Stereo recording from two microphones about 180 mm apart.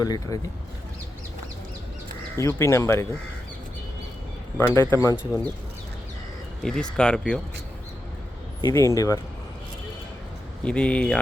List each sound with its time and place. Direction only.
0.0 s speech: 20° left (ahead or behind)
2.4 s speech: 15° left (ahead or behind)
4.5 s speech: 15° left (ahead or behind)
6.6 s speech: 5° left (ahead or behind)
8.6 s speech: 20° left (ahead or behind)
10.6 s speech: 5° left (ahead or behind)